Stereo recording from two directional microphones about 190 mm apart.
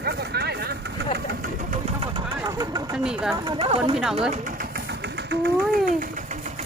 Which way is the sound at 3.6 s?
30° right (ahead or behind).